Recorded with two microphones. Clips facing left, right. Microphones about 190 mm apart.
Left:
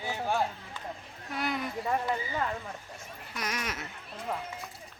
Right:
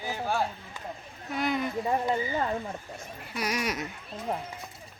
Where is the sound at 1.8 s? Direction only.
20° right (ahead or behind).